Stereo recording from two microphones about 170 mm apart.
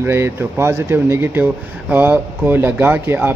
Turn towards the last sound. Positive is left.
turn(degrees=-10)  # may be behind; listen again after turning